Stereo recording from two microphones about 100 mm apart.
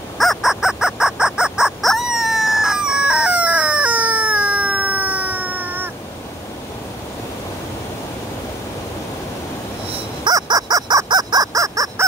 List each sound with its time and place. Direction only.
0.2 s bird: centre (ahead or behind); by 5.9 s 15° right (ahead or behind)
10.2 s bird: 40° right (ahead or behind)